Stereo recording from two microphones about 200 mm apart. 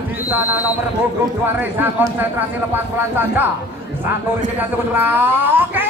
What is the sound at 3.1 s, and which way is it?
Speech, 10° right (ahead or behind).